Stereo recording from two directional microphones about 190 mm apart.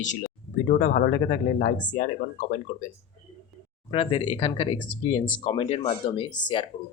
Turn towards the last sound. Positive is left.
turn(degrees=25)  # may be behind; listen again after turning